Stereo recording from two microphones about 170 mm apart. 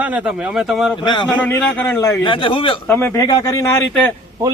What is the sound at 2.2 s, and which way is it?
Speech, 30° left (ahead or behind).